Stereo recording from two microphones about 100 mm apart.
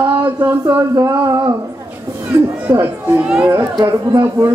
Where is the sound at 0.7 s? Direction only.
35° right (ahead or behind).